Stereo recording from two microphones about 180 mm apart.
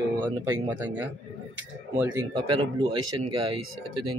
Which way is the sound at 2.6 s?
30° right (ahead or behind).